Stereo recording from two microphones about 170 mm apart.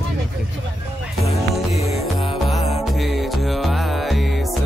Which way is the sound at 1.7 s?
35° left (ahead or behind).